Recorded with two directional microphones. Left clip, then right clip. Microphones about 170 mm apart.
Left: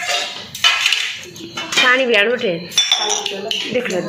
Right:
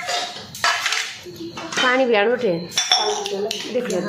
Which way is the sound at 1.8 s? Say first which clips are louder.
Left 3 dB; 15° right (ahead or behind).